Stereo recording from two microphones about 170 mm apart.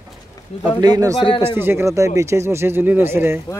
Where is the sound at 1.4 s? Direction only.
15° right (ahead or behind).